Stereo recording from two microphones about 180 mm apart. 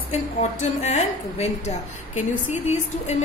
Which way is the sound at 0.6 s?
40° left (ahead or behind).